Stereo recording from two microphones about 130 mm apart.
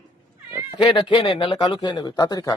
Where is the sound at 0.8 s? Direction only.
40° left (ahead or behind).